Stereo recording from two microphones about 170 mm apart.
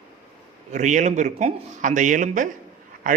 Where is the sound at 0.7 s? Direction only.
45° right (ahead or behind).